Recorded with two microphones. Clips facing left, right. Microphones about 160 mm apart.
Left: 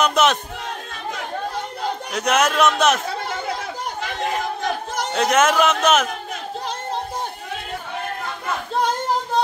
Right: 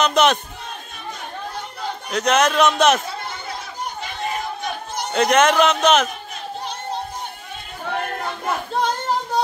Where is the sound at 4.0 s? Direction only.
90° left.